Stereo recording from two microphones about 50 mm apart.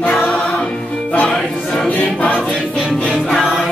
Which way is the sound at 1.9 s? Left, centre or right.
Left.